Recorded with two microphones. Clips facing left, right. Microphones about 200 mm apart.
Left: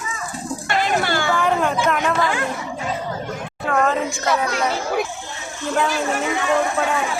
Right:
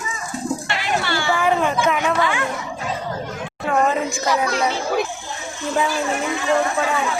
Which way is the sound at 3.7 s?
15° right (ahead or behind).